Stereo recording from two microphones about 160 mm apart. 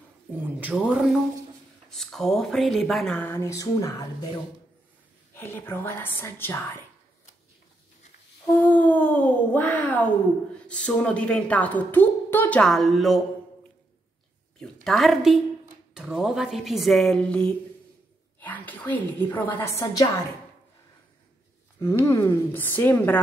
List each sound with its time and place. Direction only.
0.3 s speech: 10° right (ahead or behind); by 4.3 s 20° left (ahead or behind)
5.3 s a woman's voice: 15° left (ahead or behind)
8.5 s a woman's voice: 10° left (ahead or behind)
14.6 s a woman's voice: centre (ahead or behind); by 20.1 s 20° left (ahead or behind)
21.7 s a woman's voice: 15° left (ahead or behind)